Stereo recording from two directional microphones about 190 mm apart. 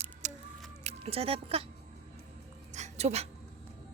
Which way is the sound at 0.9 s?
30° right (ahead or behind).